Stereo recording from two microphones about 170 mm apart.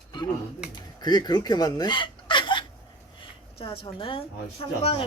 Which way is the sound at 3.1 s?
30° left (ahead or behind).